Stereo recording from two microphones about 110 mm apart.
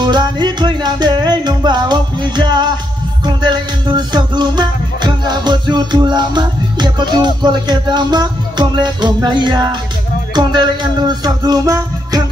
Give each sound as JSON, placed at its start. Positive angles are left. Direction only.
{"t": 0.0, "sound": "music", "side_deg": -40}